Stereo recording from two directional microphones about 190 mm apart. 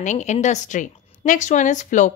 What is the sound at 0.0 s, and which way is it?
A woman's voice, 40° left (ahead or behind).